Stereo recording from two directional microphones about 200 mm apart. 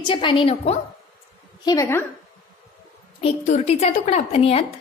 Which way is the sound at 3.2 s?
30° left (ahead or behind).